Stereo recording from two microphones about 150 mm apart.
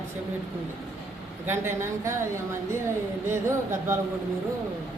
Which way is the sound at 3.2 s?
15° right (ahead or behind).